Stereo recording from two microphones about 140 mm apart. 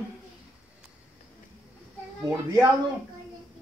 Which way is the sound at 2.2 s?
25° right (ahead or behind).